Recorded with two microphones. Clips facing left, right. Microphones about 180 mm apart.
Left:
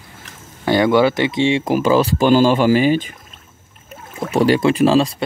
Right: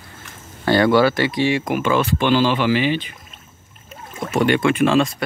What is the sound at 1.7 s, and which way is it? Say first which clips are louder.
Speech: left 4 dB; 35° left (ahead or behind).